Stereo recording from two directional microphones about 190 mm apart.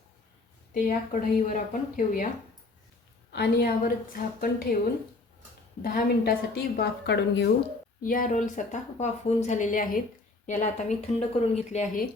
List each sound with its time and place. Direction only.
0.7 s speech: 40° left (ahead or behind)
3.3 s speech: 55° left (ahead or behind)
5.8 s speech: 50° left (ahead or behind)
8.0 s speech: 45° left (ahead or behind)